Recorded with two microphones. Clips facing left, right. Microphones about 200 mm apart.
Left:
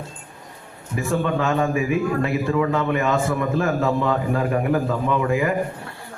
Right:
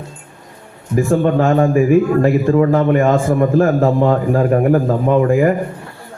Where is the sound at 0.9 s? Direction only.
45° right (ahead or behind).